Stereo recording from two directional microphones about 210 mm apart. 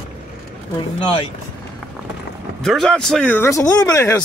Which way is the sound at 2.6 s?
Centre (ahead or behind).